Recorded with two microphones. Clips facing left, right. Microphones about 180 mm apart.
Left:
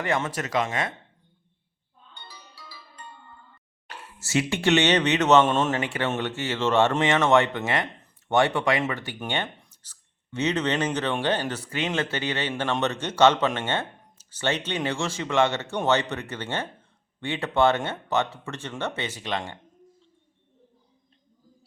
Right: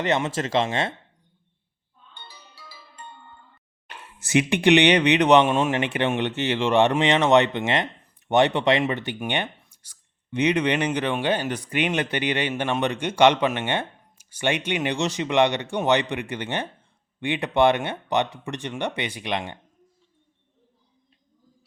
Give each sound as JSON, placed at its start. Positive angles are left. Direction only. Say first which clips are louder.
{"t": 0.0, "sound": "speech", "louder": "right 3 dB", "side_deg": -20}
{"t": 2.1, "sound": "music", "louder": "even", "side_deg": -25}
{"t": 3.8, "sound": "speech", "louder": "left 1 dB", "side_deg": -20}